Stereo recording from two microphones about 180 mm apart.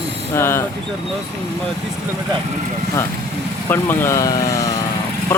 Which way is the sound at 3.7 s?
10° left (ahead or behind).